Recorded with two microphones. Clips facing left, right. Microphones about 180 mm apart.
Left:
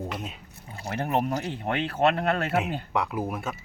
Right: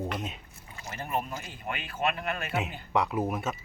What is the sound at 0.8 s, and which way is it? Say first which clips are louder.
Speech: left 7 dB; 65° left (ahead or behind).